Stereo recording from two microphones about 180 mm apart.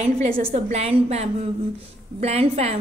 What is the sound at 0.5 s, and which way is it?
A woman's voice, 35° right (ahead or behind).